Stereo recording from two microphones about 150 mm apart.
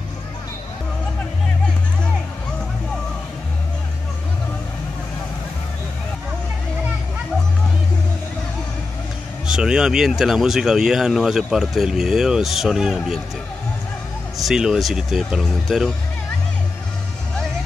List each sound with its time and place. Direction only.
9.5 s speech: 5° right (ahead or behind)
14.4 s speech: 5° right (ahead or behind)